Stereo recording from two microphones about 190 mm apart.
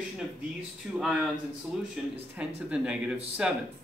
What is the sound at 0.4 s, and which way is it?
Speech, 5° right (ahead or behind).